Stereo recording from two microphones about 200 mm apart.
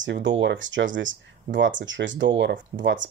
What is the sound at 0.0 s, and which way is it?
Speech, 65° right (ahead or behind).